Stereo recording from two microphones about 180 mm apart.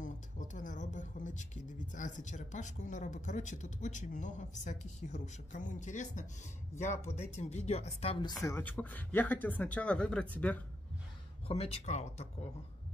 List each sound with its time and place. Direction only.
0.0 s speech: 45° left (ahead or behind); by 10.6 s 10° left (ahead or behind)
11.4 s speech: 35° left (ahead or behind)